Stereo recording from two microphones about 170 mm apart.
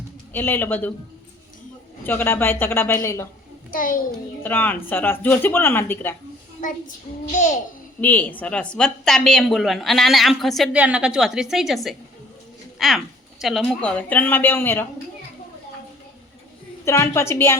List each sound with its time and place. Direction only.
0.3 s speech: 10° left (ahead or behind)
2.0 s speech: 15° left (ahead or behind)
3.7 s a child's voice: 55° left (ahead or behind)
4.4 s speech: 10° left (ahead or behind)
7.3 s a child's voice: 45° left (ahead or behind)
8.0 s a woman's voice: 10° left (ahead or behind)
16.8 s speech: 15° left (ahead or behind)